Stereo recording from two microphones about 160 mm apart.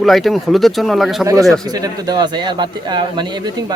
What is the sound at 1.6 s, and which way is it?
A man's voice, 25° right (ahead or behind).